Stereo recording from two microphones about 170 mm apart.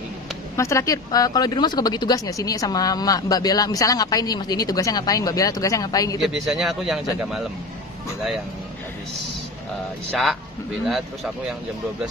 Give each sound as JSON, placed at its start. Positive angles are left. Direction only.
{"t": 0.6, "sound": "speech", "side_deg": 15}
{"t": 6.2, "sound": "speech", "side_deg": 0}